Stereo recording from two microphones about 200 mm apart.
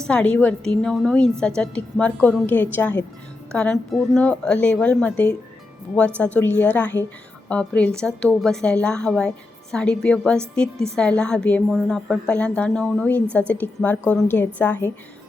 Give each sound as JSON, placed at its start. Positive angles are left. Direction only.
{"t": 0.1, "sound": "a woman's voice", "side_deg": 5}